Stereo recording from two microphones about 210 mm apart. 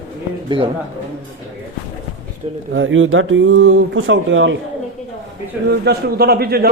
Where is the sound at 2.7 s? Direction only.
65° right (ahead or behind).